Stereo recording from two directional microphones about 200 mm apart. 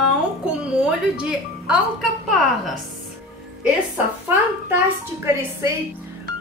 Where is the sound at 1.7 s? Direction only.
Centre (ahead or behind).